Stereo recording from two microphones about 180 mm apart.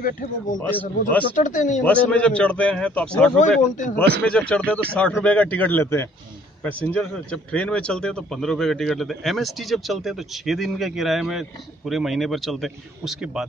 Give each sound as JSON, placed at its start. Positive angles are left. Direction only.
{"t": 0.0, "sound": "speech", "side_deg": 50}
{"t": 0.6, "sound": "a man's voice", "side_deg": 10}
{"t": 1.3, "sound": "speech", "side_deg": 45}
{"t": 1.9, "sound": "a man's voice", "side_deg": 5}
{"t": 3.7, "sound": "speech", "side_deg": 45}
{"t": 4.2, "sound": "a man's voice", "side_deg": 5}